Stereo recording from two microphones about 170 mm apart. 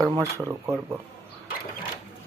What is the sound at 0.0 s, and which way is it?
Speech, 20° right (ahead or behind).